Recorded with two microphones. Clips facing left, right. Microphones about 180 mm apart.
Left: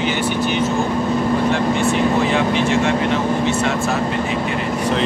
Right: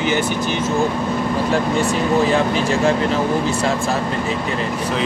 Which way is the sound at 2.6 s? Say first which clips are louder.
Even; 35° right (ahead or behind).